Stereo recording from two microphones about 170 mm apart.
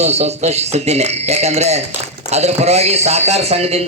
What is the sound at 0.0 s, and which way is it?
Speech, 40° right (ahead or behind).